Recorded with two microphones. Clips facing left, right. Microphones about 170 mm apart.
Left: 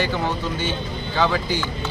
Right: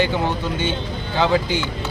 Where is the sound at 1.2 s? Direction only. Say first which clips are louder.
Right 3 dB; 20° right (ahead or behind).